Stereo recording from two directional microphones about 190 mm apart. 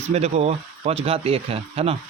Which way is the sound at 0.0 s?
35° right (ahead or behind).